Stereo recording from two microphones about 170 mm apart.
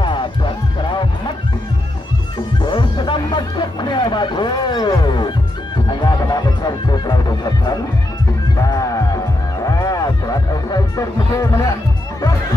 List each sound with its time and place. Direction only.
0.0 s music: 30° left (ahead or behind)
2.6 s music: 25° left (ahead or behind)
8.5 s music: 20° left (ahead or behind)